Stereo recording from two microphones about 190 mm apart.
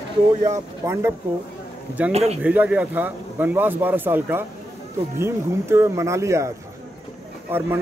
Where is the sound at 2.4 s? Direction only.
10° right (ahead or behind).